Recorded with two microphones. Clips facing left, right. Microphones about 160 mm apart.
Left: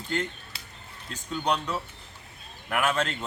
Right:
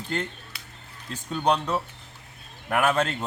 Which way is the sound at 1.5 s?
35° right (ahead or behind).